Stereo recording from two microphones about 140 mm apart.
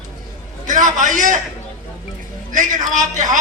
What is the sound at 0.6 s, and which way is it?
Speech, 65° right (ahead or behind).